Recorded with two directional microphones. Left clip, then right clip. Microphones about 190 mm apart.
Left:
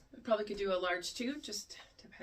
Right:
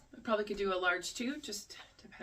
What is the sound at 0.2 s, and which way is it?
Speech, 15° right (ahead or behind).